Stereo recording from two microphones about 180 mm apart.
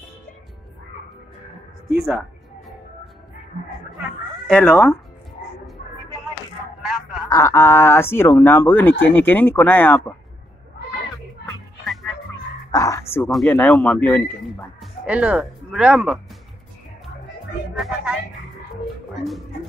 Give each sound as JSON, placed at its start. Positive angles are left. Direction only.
{"t": 4.5, "sound": "a man's voice", "side_deg": 5}
{"t": 6.8, "sound": "a sound", "side_deg": -5}
{"t": 7.2, "sound": "a man's voice", "side_deg": 15}
{"t": 11.8, "sound": "music", "side_deg": 0}
{"t": 12.7, "sound": "bow-wow", "side_deg": 20}
{"t": 13.3, "sound": "a man's voice", "side_deg": 5}
{"t": 15.0, "sound": "speech", "side_deg": -5}
{"t": 17.7, "sound": "music", "side_deg": 0}